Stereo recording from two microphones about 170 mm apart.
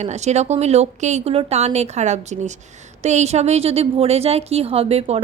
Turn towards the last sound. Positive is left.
turn(degrees=-35)  # may be behind; listen again after turning